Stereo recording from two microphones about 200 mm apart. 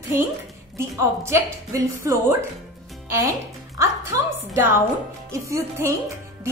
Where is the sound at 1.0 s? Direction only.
15° right (ahead or behind).